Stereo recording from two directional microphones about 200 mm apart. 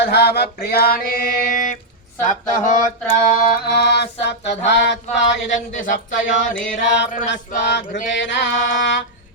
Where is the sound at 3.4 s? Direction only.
55° left (ahead or behind).